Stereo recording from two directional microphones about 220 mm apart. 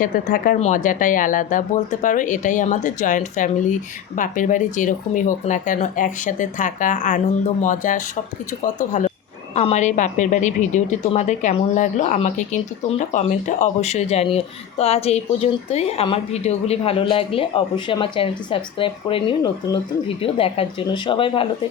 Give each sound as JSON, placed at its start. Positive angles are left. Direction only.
{"t": 0.0, "sound": "a woman's voice", "side_deg": 40}